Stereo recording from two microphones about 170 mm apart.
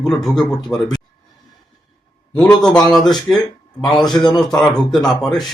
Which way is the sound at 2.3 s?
5° left (ahead or behind).